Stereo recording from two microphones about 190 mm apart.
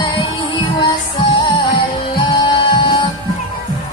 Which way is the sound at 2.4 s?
25° left (ahead or behind).